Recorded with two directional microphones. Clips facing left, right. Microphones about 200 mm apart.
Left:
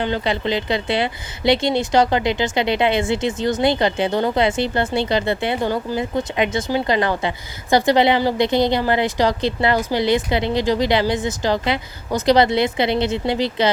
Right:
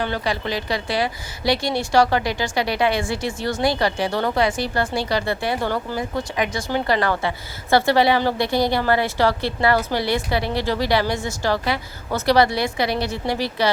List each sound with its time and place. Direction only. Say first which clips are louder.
0.0 s speech: left 3 dB; 20° left (ahead or behind)